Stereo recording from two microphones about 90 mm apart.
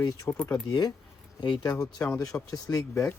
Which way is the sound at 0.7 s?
45° left (ahead or behind).